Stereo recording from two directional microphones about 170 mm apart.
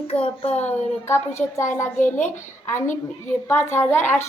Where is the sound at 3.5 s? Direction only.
15° left (ahead or behind).